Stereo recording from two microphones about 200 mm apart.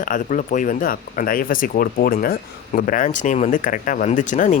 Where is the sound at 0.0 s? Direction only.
40° left (ahead or behind).